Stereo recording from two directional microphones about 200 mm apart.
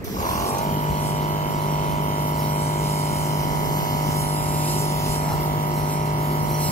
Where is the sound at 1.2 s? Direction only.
40° left (ahead or behind).